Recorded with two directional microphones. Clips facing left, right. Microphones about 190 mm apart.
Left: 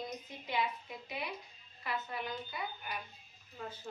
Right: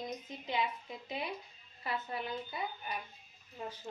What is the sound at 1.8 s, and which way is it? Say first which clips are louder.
A woman's voice: right 1 dB; 30° right (ahead or behind).